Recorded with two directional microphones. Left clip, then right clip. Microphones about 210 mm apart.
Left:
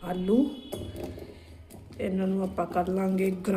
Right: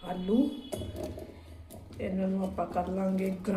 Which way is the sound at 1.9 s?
40° left (ahead or behind).